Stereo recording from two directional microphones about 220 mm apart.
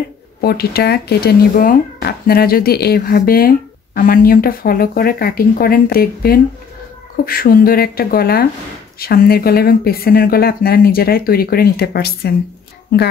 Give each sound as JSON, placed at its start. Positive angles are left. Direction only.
{"t": 0.4, "sound": "speech", "side_deg": 45}